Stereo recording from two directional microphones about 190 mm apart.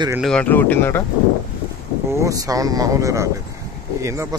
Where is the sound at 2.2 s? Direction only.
15° right (ahead or behind).